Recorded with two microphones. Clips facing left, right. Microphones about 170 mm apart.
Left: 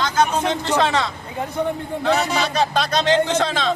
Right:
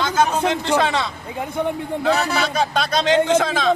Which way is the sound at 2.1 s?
15° left (ahead or behind).